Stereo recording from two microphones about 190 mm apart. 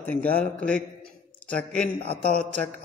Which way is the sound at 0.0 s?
10° left (ahead or behind).